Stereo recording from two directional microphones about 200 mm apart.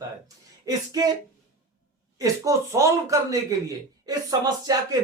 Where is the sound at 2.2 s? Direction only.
15° right (ahead or behind).